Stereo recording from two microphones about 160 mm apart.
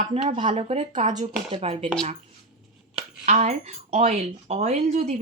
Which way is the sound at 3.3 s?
45° right (ahead or behind).